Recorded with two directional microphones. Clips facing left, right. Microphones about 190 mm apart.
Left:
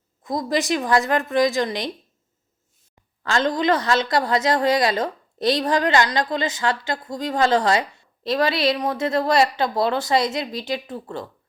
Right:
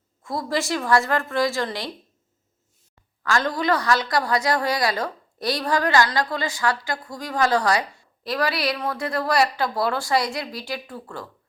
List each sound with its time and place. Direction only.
0.2 s a woman's voice: 20° left (ahead or behind)
3.2 s a woman's voice: 25° left (ahead or behind)